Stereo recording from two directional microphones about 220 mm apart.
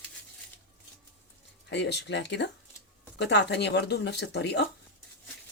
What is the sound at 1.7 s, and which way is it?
Speech, 50° left (ahead or behind).